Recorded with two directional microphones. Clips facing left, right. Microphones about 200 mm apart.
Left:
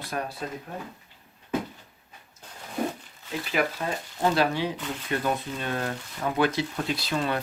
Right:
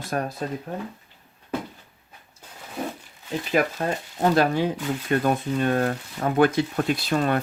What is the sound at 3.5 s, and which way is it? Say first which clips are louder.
Speech: right 4 dB; 45° right (ahead or behind).